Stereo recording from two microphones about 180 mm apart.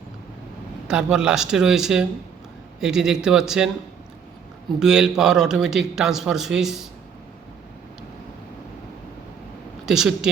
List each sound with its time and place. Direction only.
0.9 s a man's voice: 5° right (ahead or behind)
4.8 s a man's voice: 5° right (ahead or behind)
9.8 s speech: 5° right (ahead or behind)